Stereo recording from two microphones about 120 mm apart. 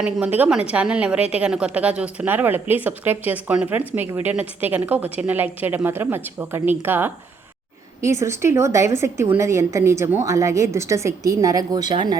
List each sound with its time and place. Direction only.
0.0 s a woman's voice: 10° right (ahead or behind); by 12.1 s 35° right (ahead or behind)